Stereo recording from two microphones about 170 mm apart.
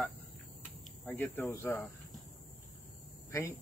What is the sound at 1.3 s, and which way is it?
Speech, 15° left (ahead or behind).